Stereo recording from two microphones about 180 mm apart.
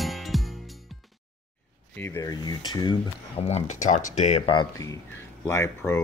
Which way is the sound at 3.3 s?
35° left (ahead or behind).